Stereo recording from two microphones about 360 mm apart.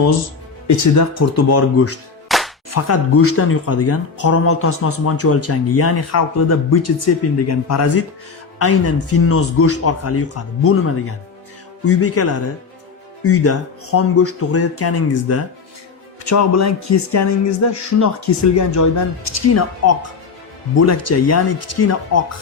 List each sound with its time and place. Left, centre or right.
0.9 s speech: left
2.3 s music: centre
2.6 s speech: left